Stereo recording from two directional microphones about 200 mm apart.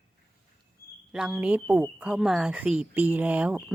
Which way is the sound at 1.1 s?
5° right (ahead or behind).